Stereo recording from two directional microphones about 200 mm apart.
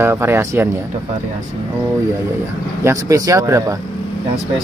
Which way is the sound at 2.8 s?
15° right (ahead or behind).